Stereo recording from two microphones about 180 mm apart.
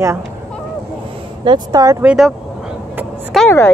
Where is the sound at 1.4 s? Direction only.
25° right (ahead or behind).